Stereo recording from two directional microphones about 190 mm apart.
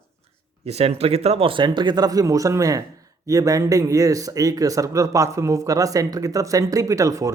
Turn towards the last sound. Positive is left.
turn(degrees=-15)  # may be behind; listen again after turning